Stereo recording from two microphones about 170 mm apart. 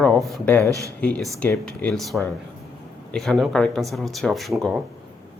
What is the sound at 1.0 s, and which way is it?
Speech, 10° left (ahead or behind).